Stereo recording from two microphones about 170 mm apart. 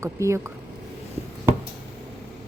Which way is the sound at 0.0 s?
15° right (ahead or behind).